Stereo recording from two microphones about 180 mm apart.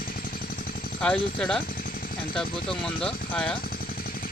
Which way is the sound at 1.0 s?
5° left (ahead or behind).